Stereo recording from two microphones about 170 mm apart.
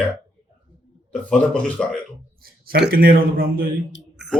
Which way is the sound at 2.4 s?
70° right (ahead or behind).